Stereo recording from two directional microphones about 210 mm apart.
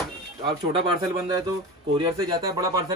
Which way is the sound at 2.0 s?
20° right (ahead or behind).